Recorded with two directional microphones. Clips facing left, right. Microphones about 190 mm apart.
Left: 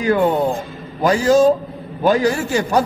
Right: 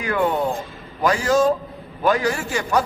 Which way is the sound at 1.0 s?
30° left (ahead or behind).